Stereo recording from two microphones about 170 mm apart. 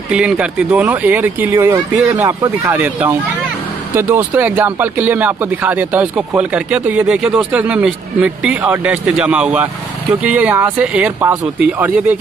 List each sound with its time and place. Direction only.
0.1 s speech: centre (ahead or behind)